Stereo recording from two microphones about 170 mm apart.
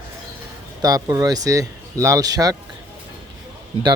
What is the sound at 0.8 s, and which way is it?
Speech, 20° right (ahead or behind).